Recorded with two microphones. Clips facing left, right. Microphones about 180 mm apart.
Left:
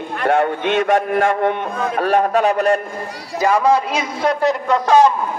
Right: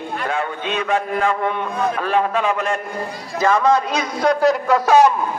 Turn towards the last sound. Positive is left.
turn(degrees=-10)  # may be behind; listen again after turning